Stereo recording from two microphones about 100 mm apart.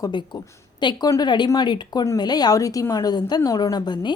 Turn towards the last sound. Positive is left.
turn(degrees=45)  # may be behind; listen again after turning